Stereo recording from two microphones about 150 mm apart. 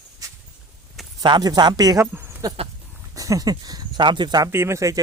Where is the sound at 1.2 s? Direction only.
30° right (ahead or behind).